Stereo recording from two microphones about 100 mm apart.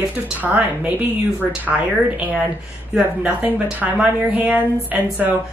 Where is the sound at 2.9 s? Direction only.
10° right (ahead or behind).